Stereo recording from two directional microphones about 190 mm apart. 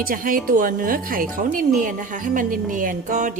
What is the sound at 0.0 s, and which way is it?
A woman's voice, 45° right (ahead or behind).